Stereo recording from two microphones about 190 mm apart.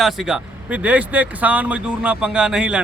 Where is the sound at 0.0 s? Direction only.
Centre (ahead or behind).